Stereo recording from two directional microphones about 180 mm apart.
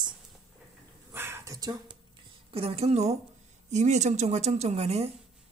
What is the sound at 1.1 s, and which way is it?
Speech, 15° right (ahead or behind).